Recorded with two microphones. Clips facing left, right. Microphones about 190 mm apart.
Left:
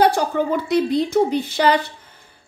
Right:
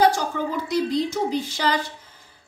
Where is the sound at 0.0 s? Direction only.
60° left (ahead or behind).